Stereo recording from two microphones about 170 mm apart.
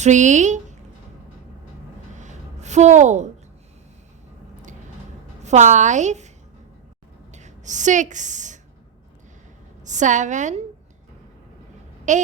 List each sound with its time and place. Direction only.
0.0 s a woman's voice: 45° right (ahead or behind)
2.1 s a sound: 45° right (ahead or behind)
5.4 s a woman's voice: 45° right (ahead or behind)
9.8 s a woman's voice: 45° right (ahead or behind)
12.1 s a woman's voice: 45° right (ahead or behind)